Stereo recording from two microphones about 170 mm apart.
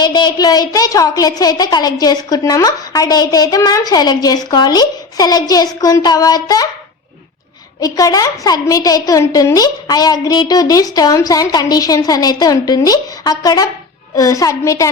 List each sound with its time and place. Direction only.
0.0 s a woman's voice: 25° left (ahead or behind)
7.8 s a woman's voice: 20° left (ahead or behind)